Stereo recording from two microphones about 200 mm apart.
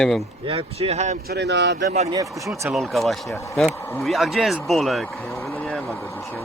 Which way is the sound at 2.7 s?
Centre (ahead or behind).